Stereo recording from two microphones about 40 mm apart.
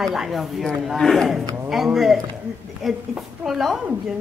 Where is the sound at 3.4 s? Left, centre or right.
Centre.